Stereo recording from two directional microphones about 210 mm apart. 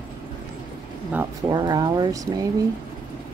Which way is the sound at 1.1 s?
20° right (ahead or behind).